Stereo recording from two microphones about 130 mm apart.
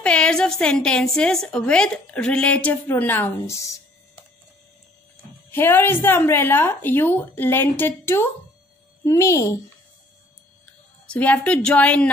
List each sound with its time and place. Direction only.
0.0 s a woman's voice: 5° left (ahead or behind); by 4.2 s 25° left (ahead or behind)
5.5 s a woman's voice: 15° left (ahead or behind)
10.6 s speech: 10° left (ahead or behind)